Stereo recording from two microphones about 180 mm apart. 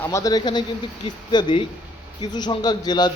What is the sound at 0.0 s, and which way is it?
A man's voice, 15° left (ahead or behind).